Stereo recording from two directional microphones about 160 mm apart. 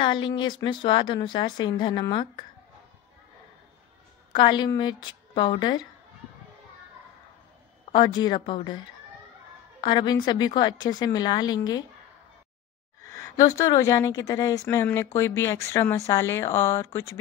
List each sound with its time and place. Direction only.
0.0 s speech: 30° left (ahead or behind)
4.3 s speech: 30° left (ahead or behind)
7.9 s speech: 25° left (ahead or behind)
9.8 s speech: 30° left (ahead or behind)
13.0 s speech: 20° left (ahead or behind)